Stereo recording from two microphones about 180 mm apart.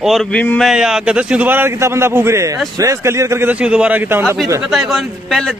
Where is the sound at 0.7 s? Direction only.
5° right (ahead or behind).